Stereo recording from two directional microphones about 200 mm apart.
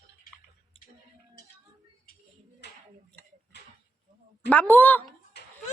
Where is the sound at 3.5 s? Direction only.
55° left (ahead or behind).